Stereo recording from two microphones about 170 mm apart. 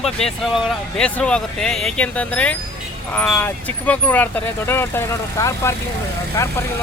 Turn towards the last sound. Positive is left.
turn(degrees=15)  # may be behind; listen again after turning